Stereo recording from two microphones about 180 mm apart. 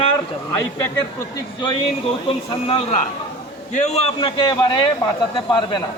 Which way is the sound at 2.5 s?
30° left (ahead or behind).